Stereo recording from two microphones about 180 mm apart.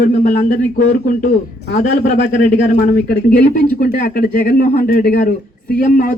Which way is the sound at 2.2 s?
60° left (ahead or behind).